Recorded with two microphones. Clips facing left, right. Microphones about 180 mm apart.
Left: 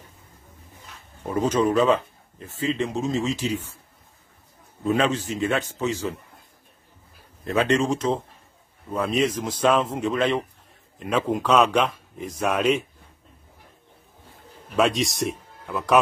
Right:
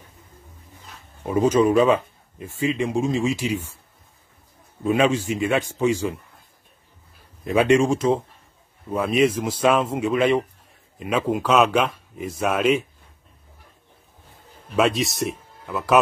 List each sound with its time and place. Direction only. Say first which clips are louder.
1.2 s speech: right 4 dB; 10° right (ahead or behind)
4.8 s speech: right 3 dB; 10° right (ahead or behind)
7.4 s speech: right 4 dB; 10° right (ahead or behind)
14.8 s speech: right 1 dB; centre (ahead or behind)